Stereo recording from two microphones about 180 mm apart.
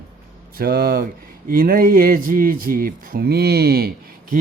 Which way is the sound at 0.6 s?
60° right (ahead or behind).